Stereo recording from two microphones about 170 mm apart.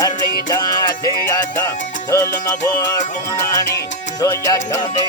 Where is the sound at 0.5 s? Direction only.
25° left (ahead or behind).